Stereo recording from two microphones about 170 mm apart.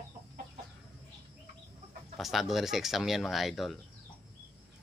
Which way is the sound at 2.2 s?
Centre (ahead or behind).